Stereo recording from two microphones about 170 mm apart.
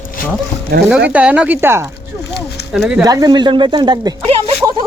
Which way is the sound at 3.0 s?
20° right (ahead or behind).